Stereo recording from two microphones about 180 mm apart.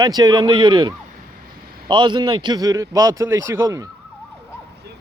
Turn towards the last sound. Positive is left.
turn(degrees=-15)  # may be behind; listen again after turning